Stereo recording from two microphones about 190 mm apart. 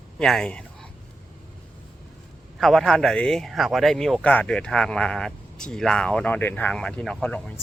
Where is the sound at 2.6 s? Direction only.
Centre (ahead or behind).